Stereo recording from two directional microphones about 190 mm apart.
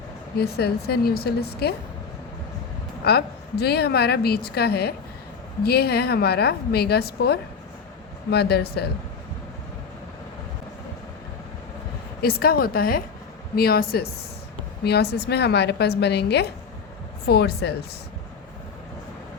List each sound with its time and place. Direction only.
0.3 s a woman's voice: 55° left (ahead or behind)
3.0 s a woman's voice: 55° left (ahead or behind)
12.2 s a woman's voice: 55° left (ahead or behind)